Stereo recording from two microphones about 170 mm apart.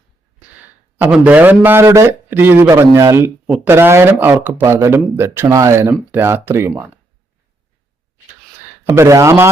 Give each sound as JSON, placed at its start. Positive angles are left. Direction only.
{"t": 0.9, "sound": "speech", "side_deg": -10}
{"t": 8.8, "sound": "speech", "side_deg": -15}